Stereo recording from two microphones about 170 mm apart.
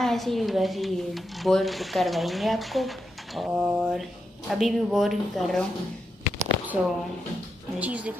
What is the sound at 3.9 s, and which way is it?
A woman's voice, centre (ahead or behind).